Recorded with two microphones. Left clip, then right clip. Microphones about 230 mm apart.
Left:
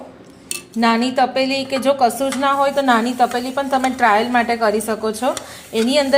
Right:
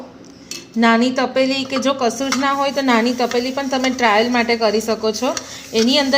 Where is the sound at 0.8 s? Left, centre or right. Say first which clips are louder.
Even; centre.